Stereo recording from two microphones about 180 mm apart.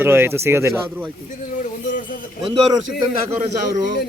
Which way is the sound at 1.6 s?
45° left (ahead or behind).